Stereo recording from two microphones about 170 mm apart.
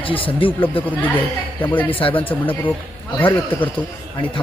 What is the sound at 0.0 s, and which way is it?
Speech, 30° left (ahead or behind).